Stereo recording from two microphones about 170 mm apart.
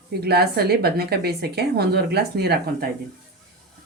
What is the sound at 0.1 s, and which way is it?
Speech, 70° right (ahead or behind).